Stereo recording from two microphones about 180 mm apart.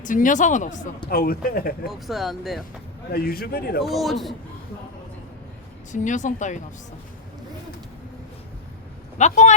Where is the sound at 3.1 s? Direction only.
55° left (ahead or behind).